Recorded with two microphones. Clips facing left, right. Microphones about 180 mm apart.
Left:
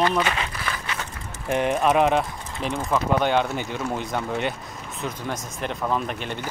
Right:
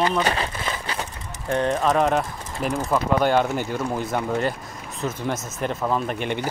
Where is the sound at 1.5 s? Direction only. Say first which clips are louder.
Even; 15° left (ahead or behind).